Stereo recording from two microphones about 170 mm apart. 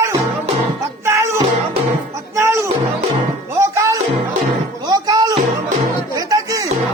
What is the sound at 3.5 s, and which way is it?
Music, 15° right (ahead or behind).